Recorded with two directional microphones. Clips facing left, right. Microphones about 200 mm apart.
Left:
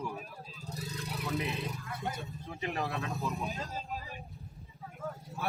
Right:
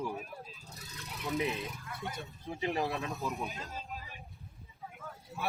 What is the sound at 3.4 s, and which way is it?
Speech, 40° left (ahead or behind).